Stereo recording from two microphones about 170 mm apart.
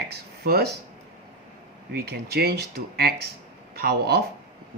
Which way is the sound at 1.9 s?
70° right (ahead or behind).